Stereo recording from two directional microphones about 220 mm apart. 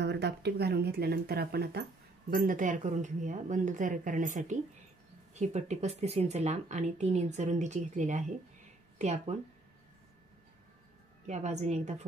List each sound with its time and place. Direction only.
0.0 s speech: 50° right (ahead or behind); by 9.4 s 30° right (ahead or behind)
11.2 s speech: 30° right (ahead or behind)